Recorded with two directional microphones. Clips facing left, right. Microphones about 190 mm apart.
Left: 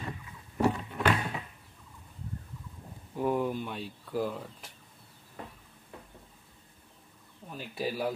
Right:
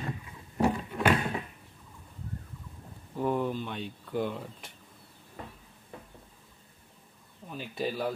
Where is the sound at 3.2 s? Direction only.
10° left (ahead or behind).